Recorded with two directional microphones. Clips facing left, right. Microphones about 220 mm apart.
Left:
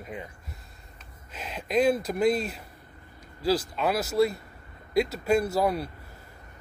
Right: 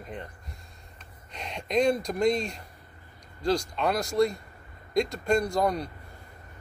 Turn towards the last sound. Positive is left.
turn(degrees=5)  # may be behind; listen again after turning